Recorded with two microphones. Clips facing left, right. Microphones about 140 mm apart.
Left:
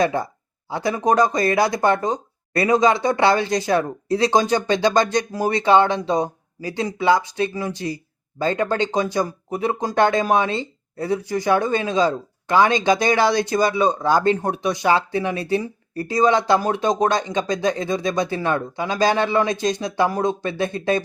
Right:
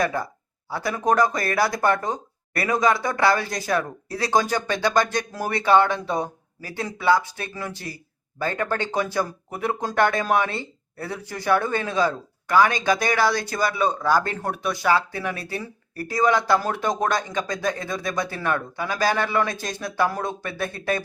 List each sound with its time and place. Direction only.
0.0 s speech: 25° left (ahead or behind)